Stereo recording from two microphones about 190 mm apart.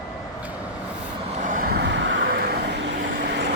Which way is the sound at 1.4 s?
45° right (ahead or behind).